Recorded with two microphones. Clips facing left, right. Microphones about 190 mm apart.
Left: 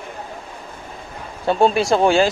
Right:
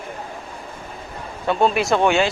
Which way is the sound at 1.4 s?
30° left (ahead or behind).